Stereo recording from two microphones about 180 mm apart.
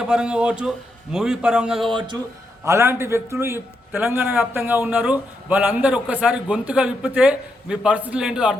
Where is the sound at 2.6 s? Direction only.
15° right (ahead or behind).